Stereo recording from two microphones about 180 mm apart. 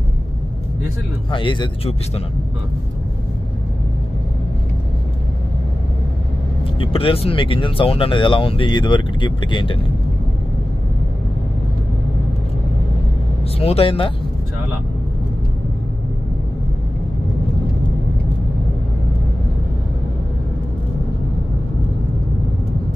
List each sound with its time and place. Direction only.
1.3 s speech: 25° left (ahead or behind)
6.8 s speech: 30° left (ahead or behind)
13.6 s speech: 35° left (ahead or behind)